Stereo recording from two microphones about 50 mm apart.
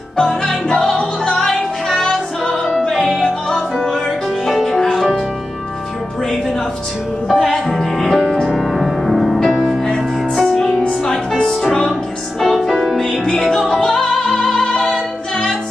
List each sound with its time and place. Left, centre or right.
0.2 s music: centre
4.6 s music: centre
7.2 s music: centre